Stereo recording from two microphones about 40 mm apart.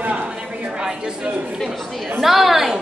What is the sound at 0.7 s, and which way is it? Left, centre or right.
Speech, centre.